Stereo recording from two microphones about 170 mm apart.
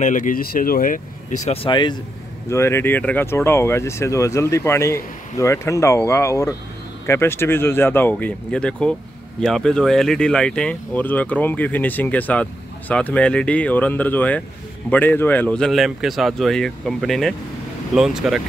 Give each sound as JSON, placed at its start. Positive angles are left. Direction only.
{"t": 0.0, "sound": "speech", "side_deg": 50}
{"t": 2.5, "sound": "speech", "side_deg": 15}